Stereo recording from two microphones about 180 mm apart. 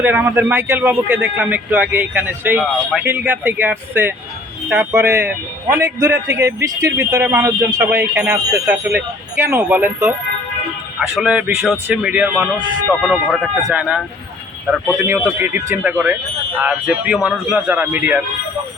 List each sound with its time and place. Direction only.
0.0 s a man's voice: 10° right (ahead or behind)
11.2 s a man's voice: 5° right (ahead or behind)
12.9 s a man's voice: centre (ahead or behind)